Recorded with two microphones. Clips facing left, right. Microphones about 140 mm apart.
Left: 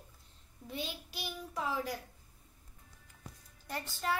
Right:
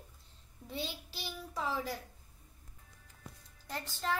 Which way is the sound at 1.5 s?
5° left (ahead or behind).